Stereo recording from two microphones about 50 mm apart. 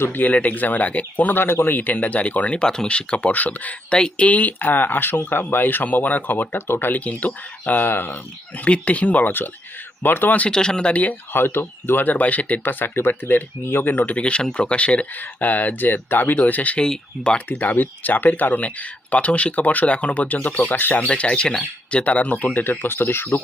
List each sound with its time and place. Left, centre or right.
0.0 s speech: left
3.3 s speech: left
3.8 s speech: left
10.5 s speech: centre
11.3 s speech: left
12.6 s speech: left
14.2 s speech: left
16.7 s speech: centre
17.5 s speech: left